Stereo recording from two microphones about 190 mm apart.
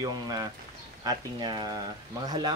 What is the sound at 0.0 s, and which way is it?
Speech, 20° right (ahead or behind).